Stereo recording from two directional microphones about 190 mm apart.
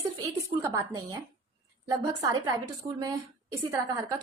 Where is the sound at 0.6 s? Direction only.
15° right (ahead or behind).